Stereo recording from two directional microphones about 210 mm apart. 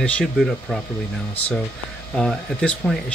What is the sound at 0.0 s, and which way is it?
Speech, centre (ahead or behind).